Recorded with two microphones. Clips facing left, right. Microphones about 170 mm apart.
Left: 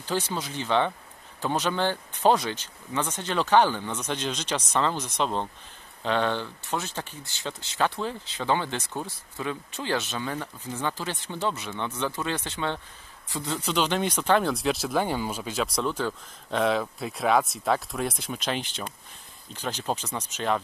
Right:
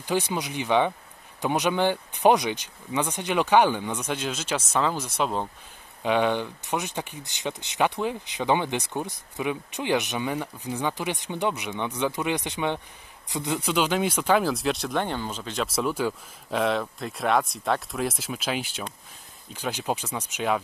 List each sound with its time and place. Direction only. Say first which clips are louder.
0.0 s speech: right 3 dB; 15° right (ahead or behind); by 15.6 s 10° left (ahead or behind)
15.6 s speech: right 2 dB; 5° right (ahead or behind)